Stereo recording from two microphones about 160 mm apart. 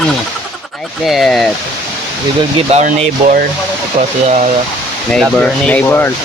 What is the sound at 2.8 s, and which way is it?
Speech, 55° right (ahead or behind).